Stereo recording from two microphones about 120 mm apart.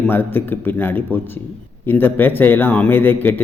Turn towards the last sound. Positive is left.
turn(degrees=15)  # may be behind; listen again after turning